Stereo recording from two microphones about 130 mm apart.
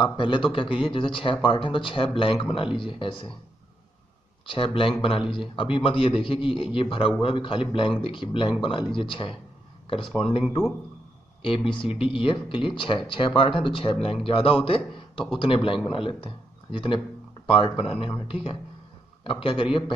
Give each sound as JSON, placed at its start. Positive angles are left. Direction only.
{"t": 0.0, "sound": "a man's voice", "side_deg": 40}
{"t": 4.5, "sound": "a man's voice", "side_deg": 45}
{"t": 11.4, "sound": "a man's voice", "side_deg": 45}